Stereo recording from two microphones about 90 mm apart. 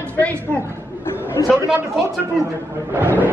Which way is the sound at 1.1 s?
25° left (ahead or behind).